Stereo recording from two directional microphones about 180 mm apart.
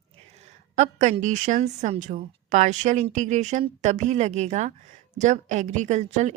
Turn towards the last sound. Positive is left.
turn(degrees=-40)  # may be behind; listen again after turning